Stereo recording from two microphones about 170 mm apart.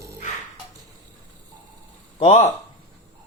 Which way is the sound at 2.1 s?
40° left (ahead or behind).